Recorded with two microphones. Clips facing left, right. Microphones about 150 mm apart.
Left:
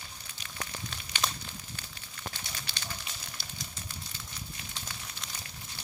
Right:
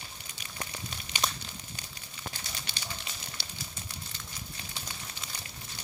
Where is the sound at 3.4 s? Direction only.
75° right (ahead or behind).